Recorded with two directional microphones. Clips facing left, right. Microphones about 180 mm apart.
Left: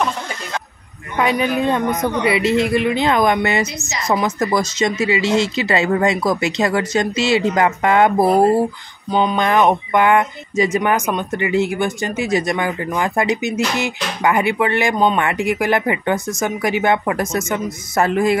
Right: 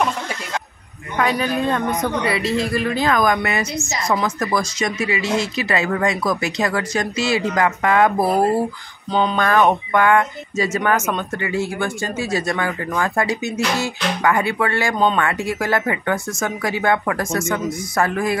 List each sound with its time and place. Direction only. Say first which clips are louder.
1.1 s a woman's voice: left 2 dB; 20° left (ahead or behind)
9.1 s a woman's voice: left 1 dB; 10° left (ahead or behind)